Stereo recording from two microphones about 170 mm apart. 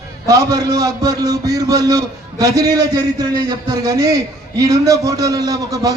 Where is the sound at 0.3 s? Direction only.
20° right (ahead or behind).